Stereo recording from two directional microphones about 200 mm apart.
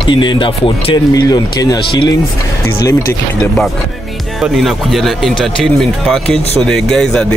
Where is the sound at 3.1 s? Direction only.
5° left (ahead or behind).